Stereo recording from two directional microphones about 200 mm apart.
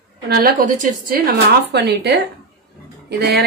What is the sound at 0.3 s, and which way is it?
Speech, 50° right (ahead or behind).